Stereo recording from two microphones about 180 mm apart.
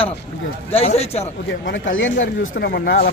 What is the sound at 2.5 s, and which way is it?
Speech, 60° left (ahead or behind).